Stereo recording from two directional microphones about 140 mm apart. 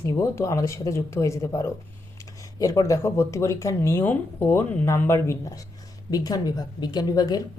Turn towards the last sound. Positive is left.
turn(degrees=25)  # may be behind; listen again after turning